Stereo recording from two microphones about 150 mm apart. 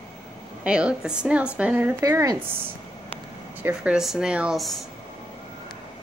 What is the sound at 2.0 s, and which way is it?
Speech, 20° right (ahead or behind).